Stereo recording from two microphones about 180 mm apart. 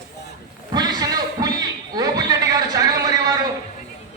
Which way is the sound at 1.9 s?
20° right (ahead or behind).